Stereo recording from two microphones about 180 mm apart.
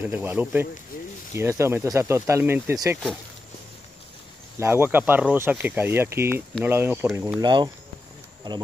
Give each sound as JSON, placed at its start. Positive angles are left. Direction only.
{"t": 0.0, "sound": "speech", "side_deg": -10}
{"t": 4.6, "sound": "speech", "side_deg": -10}
{"t": 7.4, "sound": "speech", "side_deg": -25}